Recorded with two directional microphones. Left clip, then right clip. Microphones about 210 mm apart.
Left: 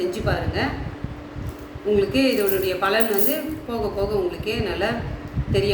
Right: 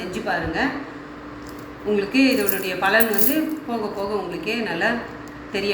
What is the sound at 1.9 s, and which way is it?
A woman's voice, 20° left (ahead or behind).